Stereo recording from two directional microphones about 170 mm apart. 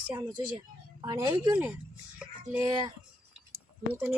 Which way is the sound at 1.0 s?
20° right (ahead or behind).